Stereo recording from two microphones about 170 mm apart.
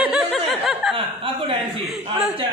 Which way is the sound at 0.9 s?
30° right (ahead or behind).